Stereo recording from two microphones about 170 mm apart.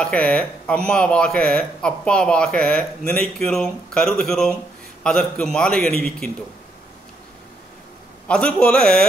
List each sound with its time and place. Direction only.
0.0 s speech: 5° left (ahead or behind)
8.3 s speech: 5° left (ahead or behind)